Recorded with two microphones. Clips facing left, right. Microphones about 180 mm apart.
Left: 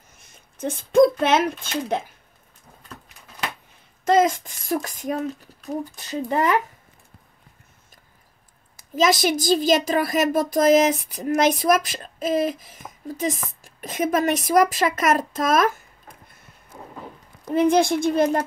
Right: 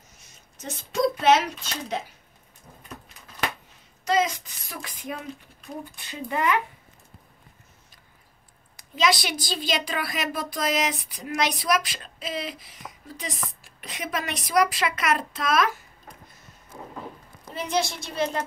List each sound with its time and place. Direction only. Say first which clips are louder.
0.2 s speech: left 12 dB; 55° left (ahead or behind)
4.0 s speech: left 6 dB; 50° left (ahead or behind)
8.9 s speech: left 5 dB; 45° left (ahead or behind)
17.5 s speech: left 10 dB; 55° left (ahead or behind)